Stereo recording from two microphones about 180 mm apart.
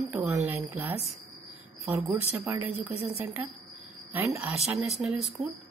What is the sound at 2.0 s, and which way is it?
Speech, 10° right (ahead or behind).